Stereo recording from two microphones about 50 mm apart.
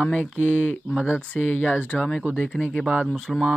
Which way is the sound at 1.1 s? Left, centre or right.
Left.